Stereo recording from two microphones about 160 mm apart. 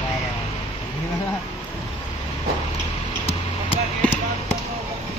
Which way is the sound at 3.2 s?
40° left (ahead or behind).